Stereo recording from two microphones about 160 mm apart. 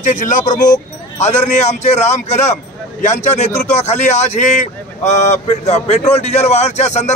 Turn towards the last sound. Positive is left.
turn(degrees=45)  # may be behind; listen again after turning